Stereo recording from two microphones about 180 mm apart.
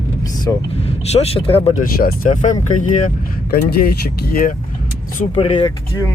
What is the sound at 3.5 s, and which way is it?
Speech, 60° left (ahead or behind).